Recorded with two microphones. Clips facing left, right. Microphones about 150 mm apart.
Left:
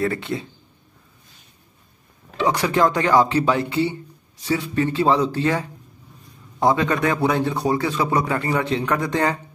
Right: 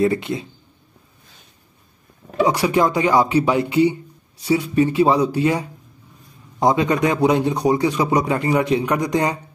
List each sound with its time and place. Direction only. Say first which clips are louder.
0.0 s speech: right 5 dB; 20° right (ahead or behind)
2.4 s a man's voice: right 1 dB; 10° right (ahead or behind)